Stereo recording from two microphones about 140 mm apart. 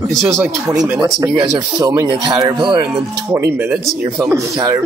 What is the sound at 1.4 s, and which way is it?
Speech, 35° right (ahead or behind).